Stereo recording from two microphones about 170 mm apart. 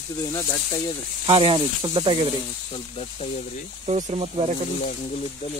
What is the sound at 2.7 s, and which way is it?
Speech, 35° left (ahead or behind).